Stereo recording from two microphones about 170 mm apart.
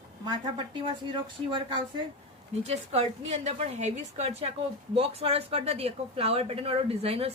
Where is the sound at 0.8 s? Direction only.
30° right (ahead or behind).